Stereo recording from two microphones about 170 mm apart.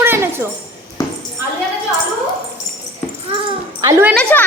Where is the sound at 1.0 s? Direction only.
20° left (ahead or behind).